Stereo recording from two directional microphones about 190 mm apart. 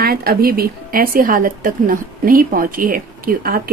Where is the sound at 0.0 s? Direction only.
50° right (ahead or behind).